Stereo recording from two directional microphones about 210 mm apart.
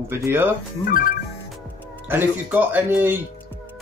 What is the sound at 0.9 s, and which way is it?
Speech, 40° left (ahead or behind).